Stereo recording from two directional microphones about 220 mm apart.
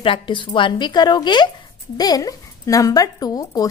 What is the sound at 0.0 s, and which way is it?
Speech, 20° left (ahead or behind).